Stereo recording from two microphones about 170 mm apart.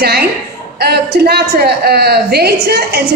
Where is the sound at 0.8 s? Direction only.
70° right (ahead or behind).